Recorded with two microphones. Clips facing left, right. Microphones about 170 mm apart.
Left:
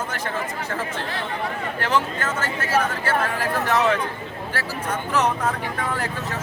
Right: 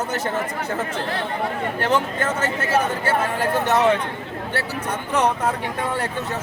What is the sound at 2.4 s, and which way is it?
Speech, 25° right (ahead or behind).